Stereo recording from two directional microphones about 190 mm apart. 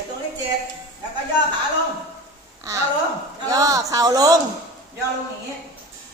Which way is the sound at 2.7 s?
15° right (ahead or behind).